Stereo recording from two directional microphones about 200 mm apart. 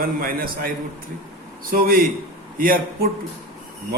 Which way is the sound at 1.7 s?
45° right (ahead or behind).